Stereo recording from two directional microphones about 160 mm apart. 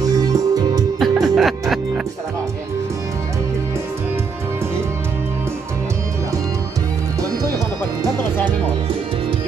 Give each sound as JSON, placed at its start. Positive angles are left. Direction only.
{"t": 0.2, "sound": "music", "side_deg": -25}
{"t": 0.9, "sound": "music", "side_deg": 0}